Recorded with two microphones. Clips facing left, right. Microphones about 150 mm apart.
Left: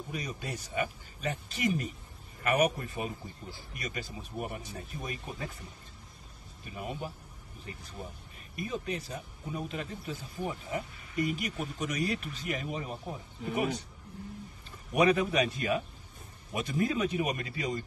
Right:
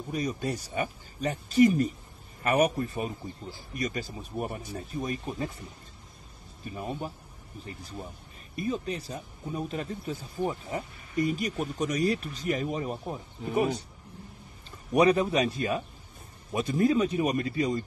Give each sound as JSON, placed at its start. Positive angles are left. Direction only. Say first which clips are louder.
{"t": 0.1, "sound": "speech", "louder": "right 9 dB", "side_deg": -40}
{"t": 6.6, "sound": "speech", "louder": "right 4 dB", "side_deg": -40}
{"t": 8.5, "sound": "speech", "louder": "right 4 dB", "side_deg": -35}
{"t": 15.0, "sound": "speech", "louder": "right 3 dB", "side_deg": -35}